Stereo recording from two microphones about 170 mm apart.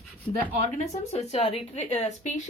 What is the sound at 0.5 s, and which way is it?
Speech, 45° left (ahead or behind).